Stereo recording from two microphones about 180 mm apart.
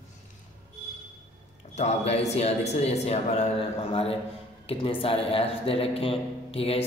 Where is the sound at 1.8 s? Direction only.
35° left (ahead or behind).